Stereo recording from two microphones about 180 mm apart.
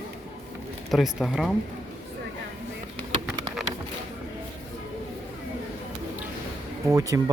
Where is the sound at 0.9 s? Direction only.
Centre (ahead or behind).